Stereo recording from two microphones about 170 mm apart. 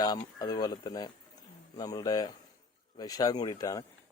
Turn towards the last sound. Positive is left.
turn(degrees=20)  # may be behind; listen again after turning